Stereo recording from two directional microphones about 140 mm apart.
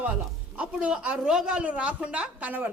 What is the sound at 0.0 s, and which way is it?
A man's voice, 10° right (ahead or behind).